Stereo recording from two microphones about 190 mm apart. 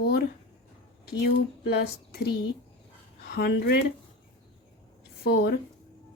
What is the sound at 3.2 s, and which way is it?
Speech, 55° left (ahead or behind).